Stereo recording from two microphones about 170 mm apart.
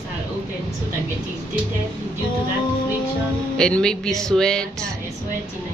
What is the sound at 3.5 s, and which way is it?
Speech, 5° left (ahead or behind).